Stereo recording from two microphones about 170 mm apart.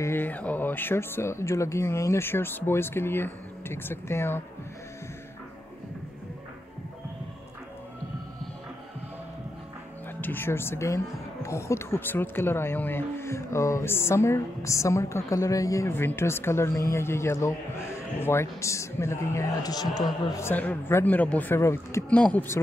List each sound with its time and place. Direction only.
0.0 s speech: 10° left (ahead or behind)
10.2 s speech: 10° left (ahead or behind)